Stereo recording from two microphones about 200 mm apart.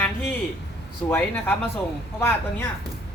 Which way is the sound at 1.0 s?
10° left (ahead or behind).